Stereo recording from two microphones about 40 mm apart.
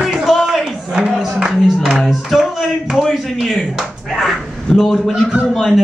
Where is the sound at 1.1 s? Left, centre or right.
Centre.